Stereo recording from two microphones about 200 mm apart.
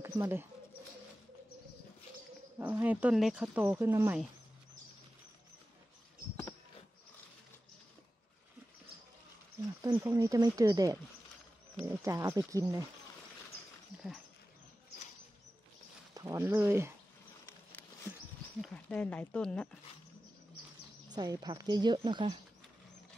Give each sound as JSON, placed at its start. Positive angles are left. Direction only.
{"t": 0.0, "sound": "speech", "side_deg": -10}
{"t": 2.6, "sound": "speech", "side_deg": -10}
{"t": 3.6, "sound": "speech", "side_deg": -15}
{"t": 9.8, "sound": "speech", "side_deg": -10}
{"t": 16.2, "sound": "speech", "side_deg": -15}
{"t": 18.6, "sound": "speech", "side_deg": 5}
{"t": 21.1, "sound": "speech", "side_deg": -20}